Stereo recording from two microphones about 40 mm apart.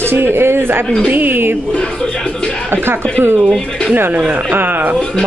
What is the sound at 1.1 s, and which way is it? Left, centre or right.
Speech, right.